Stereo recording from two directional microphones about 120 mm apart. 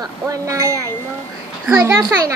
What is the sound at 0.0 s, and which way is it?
A child's voice, 25° right (ahead or behind).